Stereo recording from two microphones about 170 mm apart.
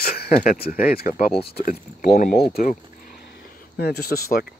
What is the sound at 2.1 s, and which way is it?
Speech, 50° left (ahead or behind).